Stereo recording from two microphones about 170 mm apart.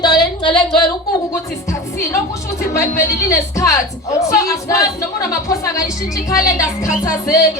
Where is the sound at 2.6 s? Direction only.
15° left (ahead or behind).